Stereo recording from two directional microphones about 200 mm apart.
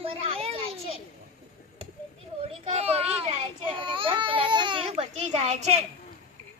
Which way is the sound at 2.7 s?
30° right (ahead or behind).